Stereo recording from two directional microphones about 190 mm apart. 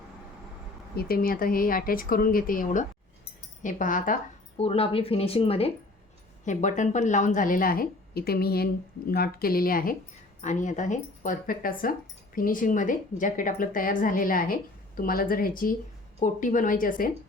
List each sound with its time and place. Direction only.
0.9 s speech: 50° left (ahead or behind)
4.5 s speech: 30° left (ahead or behind)